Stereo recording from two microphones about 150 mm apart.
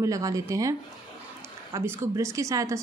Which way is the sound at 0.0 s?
20° right (ahead or behind).